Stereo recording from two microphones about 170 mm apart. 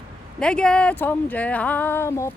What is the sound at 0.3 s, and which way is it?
Speech, 5° left (ahead or behind).